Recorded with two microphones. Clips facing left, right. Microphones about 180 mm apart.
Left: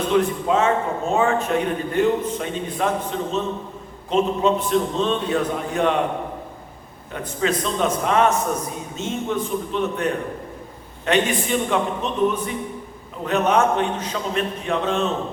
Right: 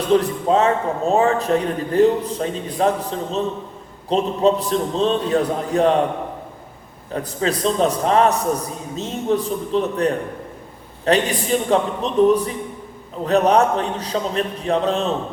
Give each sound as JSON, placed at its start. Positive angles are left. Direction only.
{"t": 0.1, "sound": "a man's voice", "side_deg": -35}
{"t": 7.1, "sound": "a man's voice", "side_deg": -35}